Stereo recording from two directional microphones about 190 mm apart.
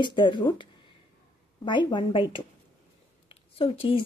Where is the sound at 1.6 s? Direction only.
25° left (ahead or behind).